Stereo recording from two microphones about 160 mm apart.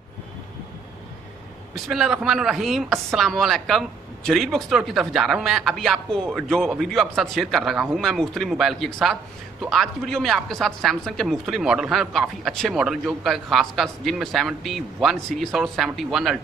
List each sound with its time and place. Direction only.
1.9 s speech: centre (ahead or behind)